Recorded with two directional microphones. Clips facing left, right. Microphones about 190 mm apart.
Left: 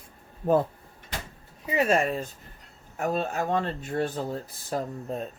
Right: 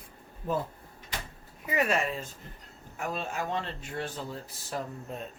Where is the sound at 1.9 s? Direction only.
45° left (ahead or behind).